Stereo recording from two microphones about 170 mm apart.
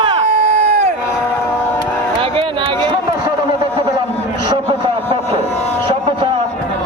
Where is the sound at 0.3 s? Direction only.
45° right (ahead or behind).